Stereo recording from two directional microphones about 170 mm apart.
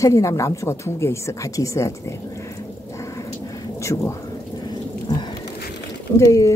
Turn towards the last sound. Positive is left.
turn(degrees=20)  # may be behind; listen again after turning